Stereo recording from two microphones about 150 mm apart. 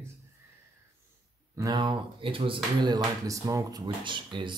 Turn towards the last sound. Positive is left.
turn(degrees=-30)  # may be behind; listen again after turning